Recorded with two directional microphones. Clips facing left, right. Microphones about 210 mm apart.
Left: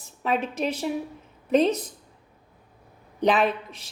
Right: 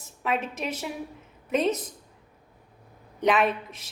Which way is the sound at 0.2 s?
35° left (ahead or behind).